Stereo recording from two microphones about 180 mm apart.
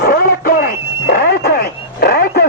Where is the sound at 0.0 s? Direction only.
55° left (ahead or behind).